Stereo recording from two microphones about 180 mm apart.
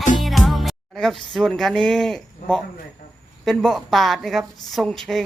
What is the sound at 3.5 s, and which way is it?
A woman's voice, centre (ahead or behind).